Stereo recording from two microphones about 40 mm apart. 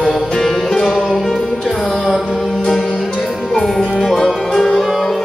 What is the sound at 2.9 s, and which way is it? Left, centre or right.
Music, centre.